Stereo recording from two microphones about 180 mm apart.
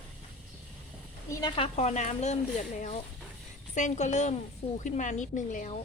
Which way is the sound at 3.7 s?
40° left (ahead or behind).